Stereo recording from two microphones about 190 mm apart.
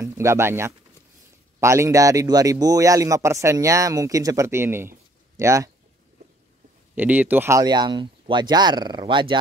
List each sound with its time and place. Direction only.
0.0 s speech: 15° right (ahead or behind)
7.0 s speech: 10° right (ahead or behind); by 9.4 s 25° right (ahead or behind)